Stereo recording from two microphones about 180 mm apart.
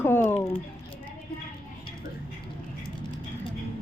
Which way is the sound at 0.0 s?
10° left (ahead or behind).